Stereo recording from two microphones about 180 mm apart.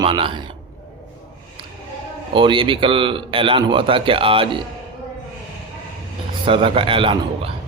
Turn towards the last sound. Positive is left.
turn(degrees=-30)  # may be behind; listen again after turning